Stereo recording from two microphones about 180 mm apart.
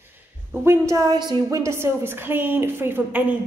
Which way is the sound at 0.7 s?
20° right (ahead or behind).